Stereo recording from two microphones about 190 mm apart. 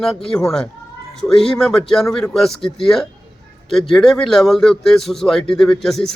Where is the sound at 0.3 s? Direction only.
5° left (ahead or behind).